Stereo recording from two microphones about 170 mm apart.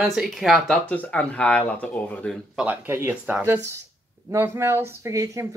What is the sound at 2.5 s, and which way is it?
Speech, 10° right (ahead or behind).